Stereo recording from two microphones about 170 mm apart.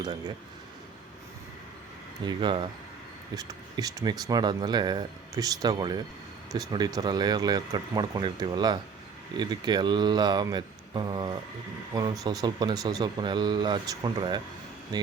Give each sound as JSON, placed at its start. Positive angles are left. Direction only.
{"t": 0.0, "sound": "speech", "side_deg": -25}
{"t": 2.2, "sound": "speech", "side_deg": -25}